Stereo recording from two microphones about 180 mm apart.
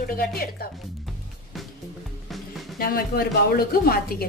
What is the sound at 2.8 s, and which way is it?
A woman's voice, 55° left (ahead or behind).